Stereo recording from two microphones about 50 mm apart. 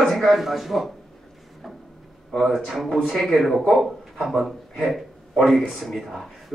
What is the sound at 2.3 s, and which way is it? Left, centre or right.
A man's voice, centre.